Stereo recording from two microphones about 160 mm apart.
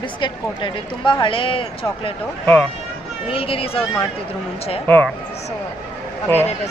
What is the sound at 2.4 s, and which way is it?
Speech, 10° left (ahead or behind).